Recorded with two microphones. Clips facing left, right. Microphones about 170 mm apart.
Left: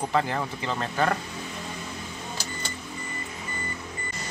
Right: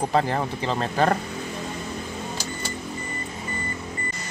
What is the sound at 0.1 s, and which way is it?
Speech, 35° right (ahead or behind).